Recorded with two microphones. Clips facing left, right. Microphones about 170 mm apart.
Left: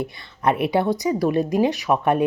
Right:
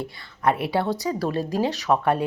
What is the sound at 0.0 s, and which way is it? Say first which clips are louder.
Speech: left 1 dB; 20° left (ahead or behind).